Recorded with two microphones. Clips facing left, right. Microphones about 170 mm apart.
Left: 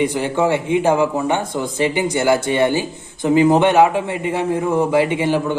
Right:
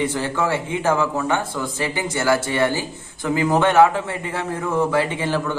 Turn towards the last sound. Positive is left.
turn(degrees=15)  # may be behind; listen again after turning